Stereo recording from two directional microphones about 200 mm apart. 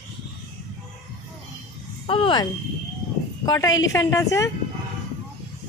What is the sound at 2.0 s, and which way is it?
A woman's voice, 25° left (ahead or behind).